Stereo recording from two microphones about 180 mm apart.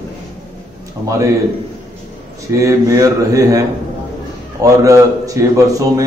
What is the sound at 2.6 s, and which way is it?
A man's voice, 20° right (ahead or behind).